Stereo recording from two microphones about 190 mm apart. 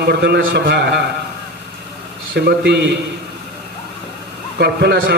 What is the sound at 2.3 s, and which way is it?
Speech, 60° right (ahead or behind).